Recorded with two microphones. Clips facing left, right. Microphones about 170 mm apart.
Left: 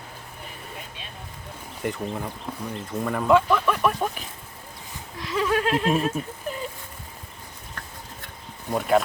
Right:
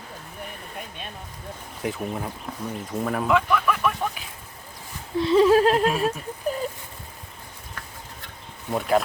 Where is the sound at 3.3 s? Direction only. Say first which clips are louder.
Left 4 dB; 30° left (ahead or behind).